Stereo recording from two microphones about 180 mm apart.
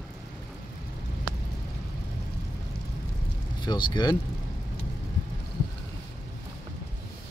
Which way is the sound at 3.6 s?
25° left (ahead or behind).